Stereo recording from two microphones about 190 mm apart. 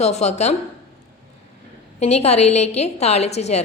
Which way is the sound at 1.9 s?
35° left (ahead or behind).